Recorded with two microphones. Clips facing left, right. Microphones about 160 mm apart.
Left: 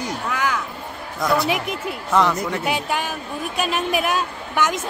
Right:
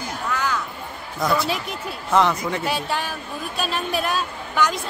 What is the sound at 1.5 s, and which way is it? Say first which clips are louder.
Speech: left 4 dB; 15° left (ahead or behind).